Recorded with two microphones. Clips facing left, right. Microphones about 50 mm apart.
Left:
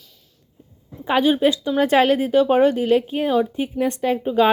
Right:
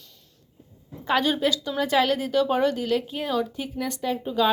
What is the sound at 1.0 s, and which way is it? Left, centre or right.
Speech, centre.